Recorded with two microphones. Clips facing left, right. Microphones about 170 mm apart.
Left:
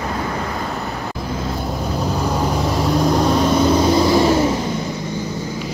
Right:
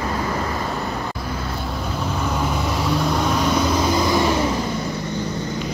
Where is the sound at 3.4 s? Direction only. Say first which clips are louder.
Left 5 dB; 30° left (ahead or behind).